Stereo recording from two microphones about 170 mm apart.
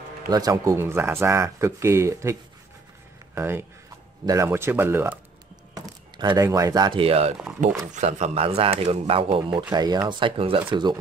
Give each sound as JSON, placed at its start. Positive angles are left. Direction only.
{"t": 0.3, "sound": "speech", "side_deg": -20}
{"t": 3.3, "sound": "speech", "side_deg": -15}
{"t": 5.8, "sound": "speech", "side_deg": -25}
{"t": 7.6, "sound": "speech", "side_deg": -50}
{"t": 9.6, "sound": "speech", "side_deg": -25}